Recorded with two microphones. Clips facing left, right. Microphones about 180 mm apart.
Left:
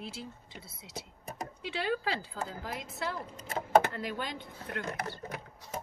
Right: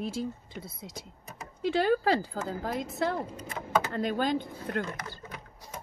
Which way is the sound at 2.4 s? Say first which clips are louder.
Right 8 dB; 60° right (ahead or behind).